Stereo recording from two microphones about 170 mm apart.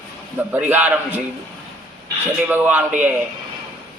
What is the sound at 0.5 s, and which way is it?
Speech, 10° right (ahead or behind).